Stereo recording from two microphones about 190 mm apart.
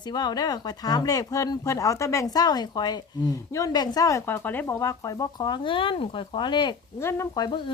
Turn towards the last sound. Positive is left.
turn(degrees=20)  # may be behind; listen again after turning